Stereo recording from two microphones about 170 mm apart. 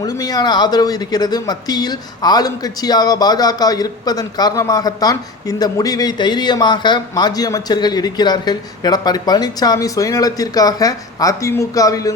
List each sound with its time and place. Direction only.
0.0 s speech: 20° left (ahead or behind)